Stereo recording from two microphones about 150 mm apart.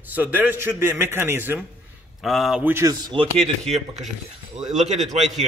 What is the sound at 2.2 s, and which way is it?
Speech, centre (ahead or behind).